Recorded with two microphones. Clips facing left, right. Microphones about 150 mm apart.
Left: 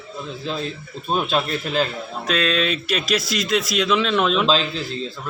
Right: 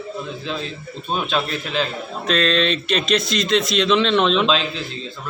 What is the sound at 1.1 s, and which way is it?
A man's voice, 5° left (ahead or behind).